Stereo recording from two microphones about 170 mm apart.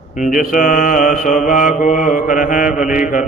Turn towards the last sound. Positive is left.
turn(degrees=50)  # may be behind; listen again after turning